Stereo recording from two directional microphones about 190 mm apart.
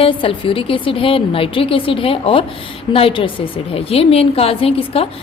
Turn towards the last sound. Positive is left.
turn(degrees=30)  # may be behind; listen again after turning